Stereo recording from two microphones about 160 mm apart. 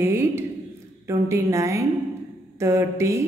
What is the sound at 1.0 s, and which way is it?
Speech, 20° right (ahead or behind).